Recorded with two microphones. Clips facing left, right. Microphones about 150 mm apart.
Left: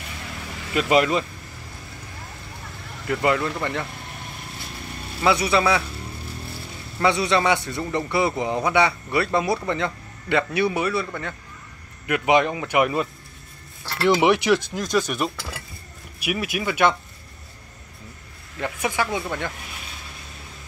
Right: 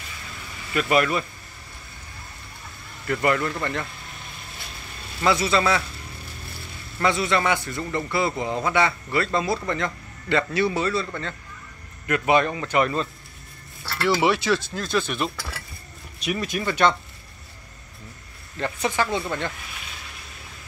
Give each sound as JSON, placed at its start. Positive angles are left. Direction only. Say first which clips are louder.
{"t": 0.7, "sound": "speech", "louder": "left 2 dB", "side_deg": 20}
{"t": 3.1, "sound": "a man's voice", "louder": "left 1 dB", "side_deg": 15}
{"t": 5.2, "sound": "a man's voice", "louder": "left 1 dB", "side_deg": 15}
{"t": 7.0, "sound": "a man's voice", "louder": "left 2 dB", "side_deg": 15}
{"t": 12.1, "sound": "a man's voice", "louder": "left 1 dB", "side_deg": 15}
{"t": 18.6, "sound": "a man's voice", "louder": "even", "side_deg": 10}